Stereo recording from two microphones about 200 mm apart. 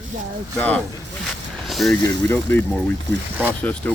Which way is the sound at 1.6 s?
Centre (ahead or behind).